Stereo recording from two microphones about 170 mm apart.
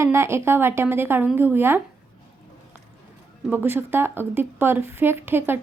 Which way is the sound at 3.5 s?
10° right (ahead or behind).